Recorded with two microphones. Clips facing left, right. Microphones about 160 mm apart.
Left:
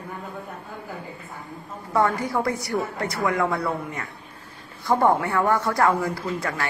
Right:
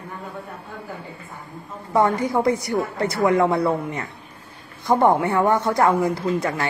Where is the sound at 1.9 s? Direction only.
20° right (ahead or behind).